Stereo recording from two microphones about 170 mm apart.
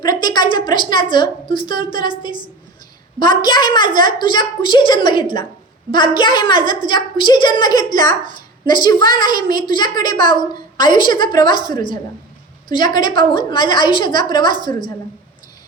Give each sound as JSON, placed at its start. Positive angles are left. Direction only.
{"t": 0.0, "sound": "a woman's voice", "side_deg": 25}